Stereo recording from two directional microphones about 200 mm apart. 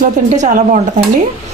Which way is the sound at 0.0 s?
40° right (ahead or behind).